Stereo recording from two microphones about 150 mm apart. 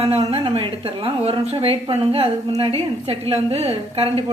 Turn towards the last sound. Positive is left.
turn(degrees=-40)  # may be behind; listen again after turning